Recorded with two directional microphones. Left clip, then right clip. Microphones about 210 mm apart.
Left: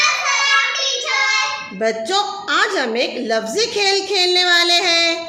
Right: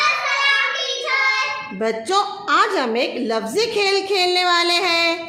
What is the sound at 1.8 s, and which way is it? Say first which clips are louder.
A woman's voice: left 1 dB; 15° right (ahead or behind).